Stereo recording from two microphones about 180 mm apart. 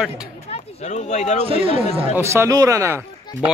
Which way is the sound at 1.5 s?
30° right (ahead or behind).